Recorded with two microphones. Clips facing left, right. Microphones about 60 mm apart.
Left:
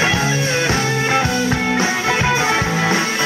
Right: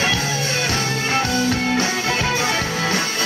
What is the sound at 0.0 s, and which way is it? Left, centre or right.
Music, left.